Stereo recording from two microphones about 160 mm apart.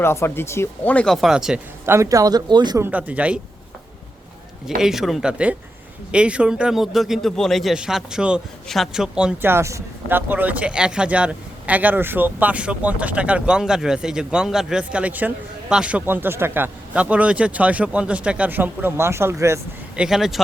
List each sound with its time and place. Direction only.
0.0 s speech: 15° left (ahead or behind); by 1.6 s 5° right (ahead or behind)
1.8 s speech: 15° right (ahead or behind)
2.8 s a man's voice: 10° right (ahead or behind)
4.8 s a man's voice: centre (ahead or behind)
20.0 s speech: 5° right (ahead or behind)